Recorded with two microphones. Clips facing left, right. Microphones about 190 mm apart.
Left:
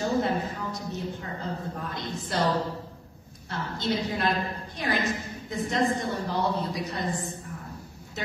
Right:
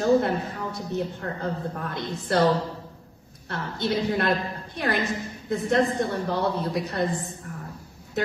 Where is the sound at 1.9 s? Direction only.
60° right (ahead or behind).